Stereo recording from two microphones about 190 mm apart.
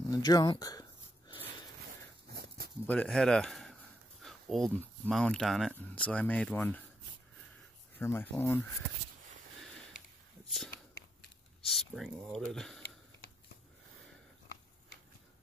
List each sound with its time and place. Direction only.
0.1 s speech: 20° left (ahead or behind)
2.3 s a sound: 55° right (ahead or behind)
2.9 s speech: 5° left (ahead or behind)
8.0 s speech: 10° left (ahead or behind)
11.6 s speech: centre (ahead or behind)